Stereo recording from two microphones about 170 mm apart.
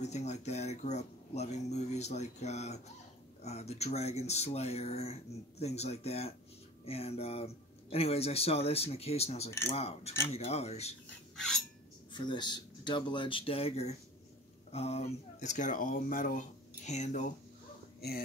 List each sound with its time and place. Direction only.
0.0 s speech: 40° left (ahead or behind)
12.1 s speech: 25° left (ahead or behind); by 17.3 s 45° left (ahead or behind)